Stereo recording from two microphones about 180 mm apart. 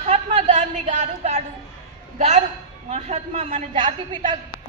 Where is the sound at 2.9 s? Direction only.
35° right (ahead or behind).